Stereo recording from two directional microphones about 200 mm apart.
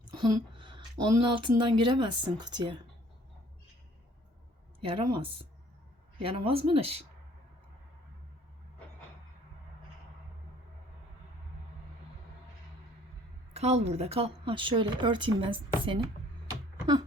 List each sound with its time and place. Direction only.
0.1 s a woman's voice: 20° right (ahead or behind)
4.9 s a woman's voice: 25° right (ahead or behind)
13.5 s a woman's voice: 30° right (ahead or behind)